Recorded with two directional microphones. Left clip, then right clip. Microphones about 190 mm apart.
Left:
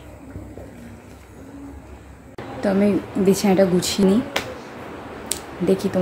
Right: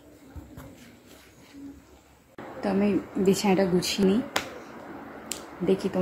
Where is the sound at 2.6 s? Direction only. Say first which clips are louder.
Left 6 dB; 5° left (ahead or behind).